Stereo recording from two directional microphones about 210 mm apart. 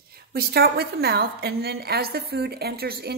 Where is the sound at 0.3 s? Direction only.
45° right (ahead or behind).